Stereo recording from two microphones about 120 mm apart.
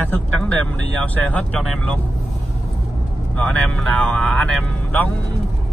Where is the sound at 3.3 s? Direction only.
10° left (ahead or behind).